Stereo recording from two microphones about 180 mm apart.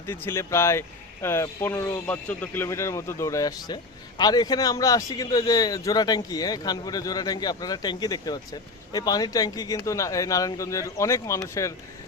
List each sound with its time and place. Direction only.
0.1 s speech: 15° left (ahead or behind)